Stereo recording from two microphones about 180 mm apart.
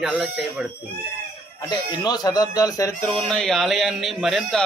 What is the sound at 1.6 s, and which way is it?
Speech, 25° left (ahead or behind).